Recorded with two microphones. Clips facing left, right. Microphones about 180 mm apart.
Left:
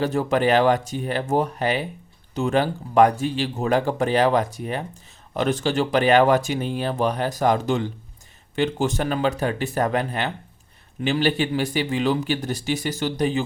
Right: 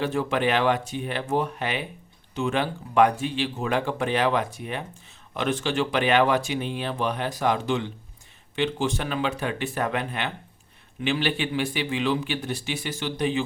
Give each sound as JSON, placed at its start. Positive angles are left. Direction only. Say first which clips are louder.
{"t": 0.0, "sound": "speech", "louder": "left 4 dB", "side_deg": 40}